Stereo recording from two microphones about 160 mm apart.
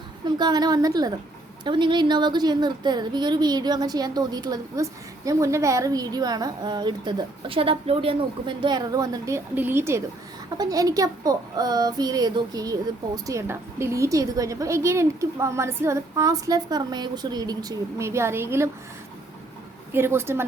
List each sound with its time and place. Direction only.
0.3 s a woman's voice: 25° right (ahead or behind)
19.9 s speech: 15° right (ahead or behind)